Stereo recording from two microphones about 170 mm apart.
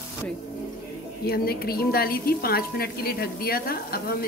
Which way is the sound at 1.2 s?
65° left (ahead or behind).